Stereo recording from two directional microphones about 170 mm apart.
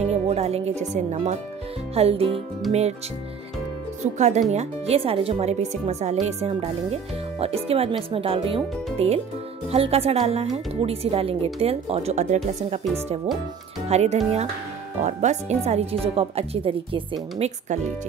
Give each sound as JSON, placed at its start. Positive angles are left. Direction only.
{"t": 0.0, "sound": "speech", "side_deg": -40}
{"t": 4.0, "sound": "speech", "side_deg": -45}
{"t": 13.8, "sound": "speech", "side_deg": -40}